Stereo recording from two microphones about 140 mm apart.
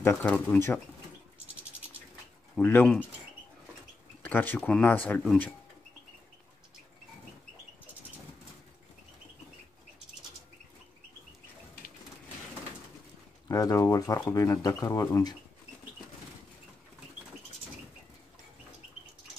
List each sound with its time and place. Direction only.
0.1 s speech: 5° left (ahead or behind)
2.5 s speech: 10° left (ahead or behind)
4.2 s speech: 15° left (ahead or behind)
13.5 s speech: 25° left (ahead or behind)